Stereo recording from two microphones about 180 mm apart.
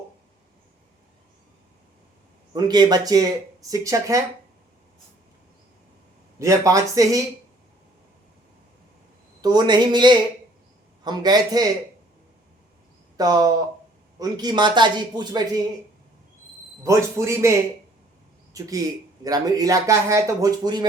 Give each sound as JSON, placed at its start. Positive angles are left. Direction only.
{"t": 2.5, "sound": "speech", "side_deg": -25}
{"t": 6.4, "sound": "speech", "side_deg": -20}
{"t": 9.4, "sound": "speech", "side_deg": -20}
{"t": 13.1, "sound": "speech", "side_deg": -20}
{"t": 16.8, "sound": "speech", "side_deg": -15}